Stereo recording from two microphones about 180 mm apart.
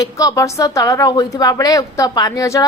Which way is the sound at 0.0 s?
20° left (ahead or behind).